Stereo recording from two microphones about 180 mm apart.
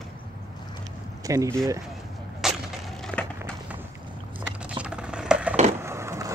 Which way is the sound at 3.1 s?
10° right (ahead or behind).